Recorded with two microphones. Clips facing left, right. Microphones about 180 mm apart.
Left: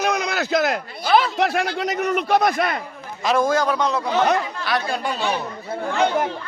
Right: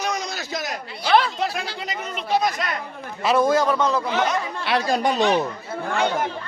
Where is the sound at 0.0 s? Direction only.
60° left (ahead or behind).